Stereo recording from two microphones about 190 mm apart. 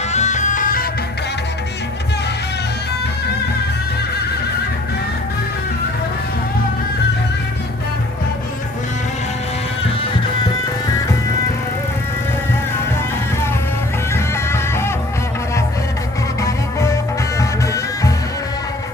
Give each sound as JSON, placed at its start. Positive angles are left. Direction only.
{"t": 0.1, "sound": "music", "side_deg": 40}
{"t": 14.1, "sound": "music", "side_deg": 15}
{"t": 16.4, "sound": "music", "side_deg": 15}